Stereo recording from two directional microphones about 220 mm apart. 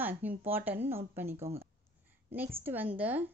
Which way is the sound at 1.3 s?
30° right (ahead or behind).